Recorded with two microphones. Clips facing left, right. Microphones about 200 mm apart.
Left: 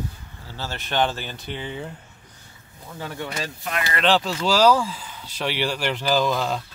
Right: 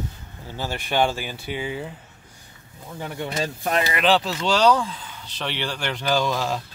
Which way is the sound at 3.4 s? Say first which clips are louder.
Right 6 dB; 35° right (ahead or behind).